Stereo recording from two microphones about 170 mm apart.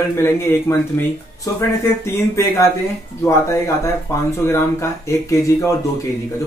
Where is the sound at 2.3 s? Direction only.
15° left (ahead or behind).